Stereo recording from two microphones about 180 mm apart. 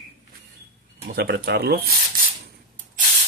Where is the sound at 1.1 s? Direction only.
60° right (ahead or behind).